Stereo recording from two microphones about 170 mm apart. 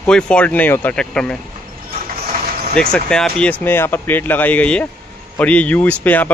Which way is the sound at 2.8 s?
5° left (ahead or behind).